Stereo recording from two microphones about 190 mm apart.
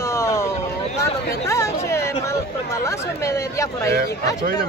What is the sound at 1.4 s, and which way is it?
Speech, 15° left (ahead or behind).